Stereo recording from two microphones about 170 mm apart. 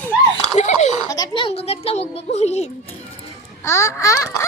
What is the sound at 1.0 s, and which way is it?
A child's voice, 25° left (ahead or behind).